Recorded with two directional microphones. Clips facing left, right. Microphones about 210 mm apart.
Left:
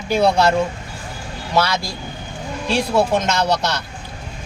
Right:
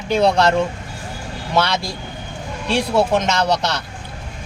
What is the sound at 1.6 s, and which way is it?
Speech, centre (ahead or behind).